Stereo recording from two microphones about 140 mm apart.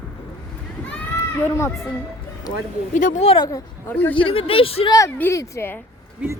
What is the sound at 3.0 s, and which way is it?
Speech, 65° left (ahead or behind).